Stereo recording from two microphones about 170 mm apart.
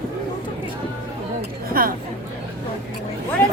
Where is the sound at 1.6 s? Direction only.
60° right (ahead or behind).